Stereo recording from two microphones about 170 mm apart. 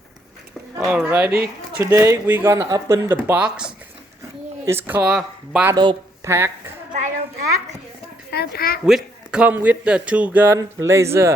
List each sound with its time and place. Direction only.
0.9 s a man's voice: 5° right (ahead or behind)
1.3 s speech: 65° right (ahead or behind)
1.8 s a man's voice: 15° right (ahead or behind)
5.7 s speech: 25° right (ahead or behind)
6.2 s a woman's voice: 15° right (ahead or behind)
8.3 s speech: 65° left (ahead or behind)
8.9 s a man's voice: 5° right (ahead or behind)